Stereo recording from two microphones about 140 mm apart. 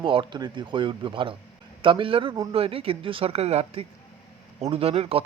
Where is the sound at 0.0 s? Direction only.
35° right (ahead or behind).